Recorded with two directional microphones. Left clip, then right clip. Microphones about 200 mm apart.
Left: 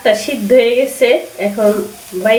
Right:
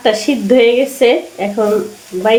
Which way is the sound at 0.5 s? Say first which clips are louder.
Even; 40° right (ahead or behind).